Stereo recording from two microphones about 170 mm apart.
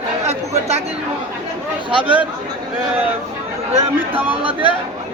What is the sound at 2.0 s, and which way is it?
Speech, 10° right (ahead or behind).